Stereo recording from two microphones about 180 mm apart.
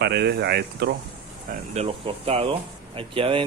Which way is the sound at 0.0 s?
65° right (ahead or behind).